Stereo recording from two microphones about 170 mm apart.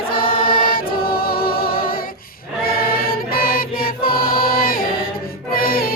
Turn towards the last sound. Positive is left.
turn(degrees=60)  # may be behind; listen again after turning